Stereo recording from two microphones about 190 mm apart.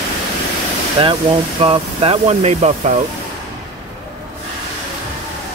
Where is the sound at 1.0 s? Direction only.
30° right (ahead or behind).